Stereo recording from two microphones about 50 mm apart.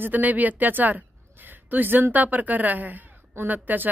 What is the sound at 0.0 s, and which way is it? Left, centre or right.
A woman's voice, right.